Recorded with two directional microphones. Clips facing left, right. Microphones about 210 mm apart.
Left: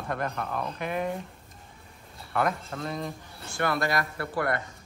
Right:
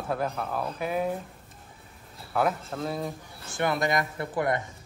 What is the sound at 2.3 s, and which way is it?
Speech, 5° right (ahead or behind).